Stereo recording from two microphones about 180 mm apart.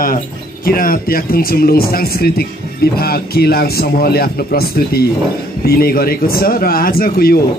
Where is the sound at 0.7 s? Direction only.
55° left (ahead or behind).